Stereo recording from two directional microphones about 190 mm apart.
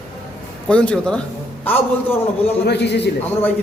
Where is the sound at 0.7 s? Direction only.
5° left (ahead or behind).